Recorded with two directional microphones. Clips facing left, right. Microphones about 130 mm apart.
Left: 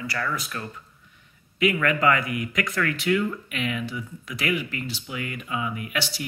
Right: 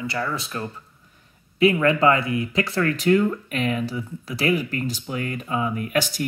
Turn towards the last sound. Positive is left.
turn(degrees=-45)  # may be behind; listen again after turning